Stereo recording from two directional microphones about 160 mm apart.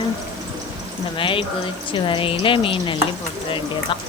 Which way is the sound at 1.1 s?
35° left (ahead or behind).